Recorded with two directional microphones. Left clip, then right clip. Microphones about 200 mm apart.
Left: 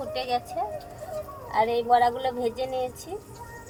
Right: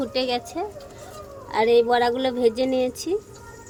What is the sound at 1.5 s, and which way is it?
A woman's voice, 55° right (ahead or behind).